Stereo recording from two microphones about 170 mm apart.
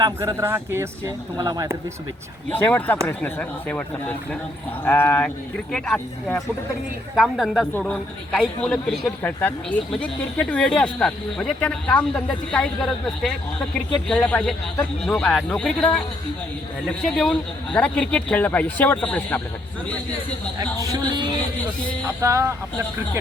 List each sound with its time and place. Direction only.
0.2 s speech: 15° right (ahead or behind)
2.5 s a man's voice: 10° left (ahead or behind)
22.0 s speech: 15° right (ahead or behind)